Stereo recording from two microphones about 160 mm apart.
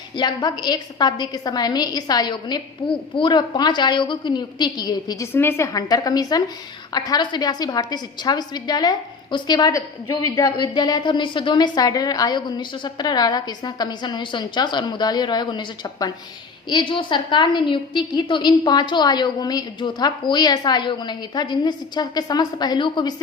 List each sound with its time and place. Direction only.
0.2 s a woman's voice: 25° left (ahead or behind)
5.3 s a woman's voice: 15° left (ahead or behind)